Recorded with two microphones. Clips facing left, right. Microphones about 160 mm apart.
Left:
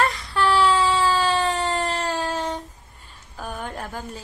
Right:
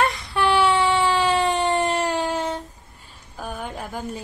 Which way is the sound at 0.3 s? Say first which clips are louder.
Even; 20° right (ahead or behind).